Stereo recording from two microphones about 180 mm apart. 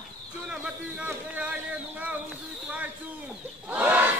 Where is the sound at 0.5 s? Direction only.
5° right (ahead or behind).